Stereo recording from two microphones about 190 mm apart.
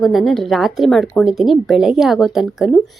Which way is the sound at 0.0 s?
Centre (ahead or behind).